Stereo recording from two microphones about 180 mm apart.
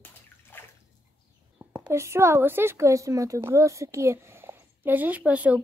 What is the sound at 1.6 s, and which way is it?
A woman's voice, 15° right (ahead or behind).